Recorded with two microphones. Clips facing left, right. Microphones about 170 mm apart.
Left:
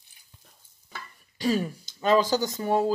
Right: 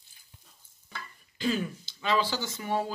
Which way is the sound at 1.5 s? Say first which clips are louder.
Left 4 dB; 40° left (ahead or behind).